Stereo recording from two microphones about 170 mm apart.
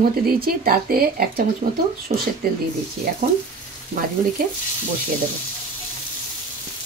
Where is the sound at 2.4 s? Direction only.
60° right (ahead or behind).